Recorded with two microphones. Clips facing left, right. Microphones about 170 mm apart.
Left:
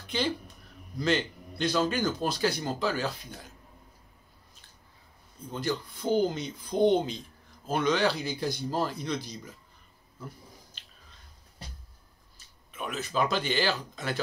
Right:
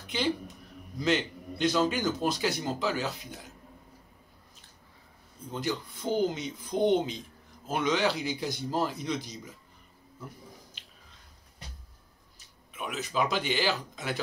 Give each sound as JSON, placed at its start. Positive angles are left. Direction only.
{"t": 0.9, "sound": "a man's voice", "side_deg": -20}
{"t": 5.5, "sound": "a man's voice", "side_deg": -20}
{"t": 12.7, "sound": "speech", "side_deg": -15}